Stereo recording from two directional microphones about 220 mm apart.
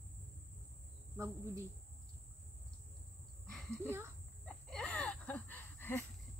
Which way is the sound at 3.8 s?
10° right (ahead or behind).